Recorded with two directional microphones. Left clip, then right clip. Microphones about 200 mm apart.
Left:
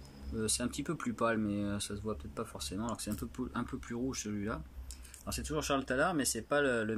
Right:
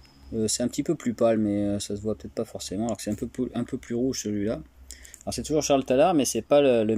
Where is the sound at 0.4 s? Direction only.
10° right (ahead or behind).